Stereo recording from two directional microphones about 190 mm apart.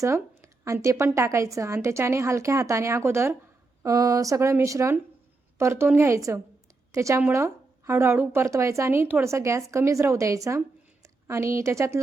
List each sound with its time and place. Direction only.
0.0 s a woman's voice: 15° right (ahead or behind)